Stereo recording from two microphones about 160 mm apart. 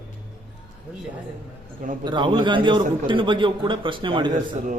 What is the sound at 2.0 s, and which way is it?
A man's voice, 30° right (ahead or behind).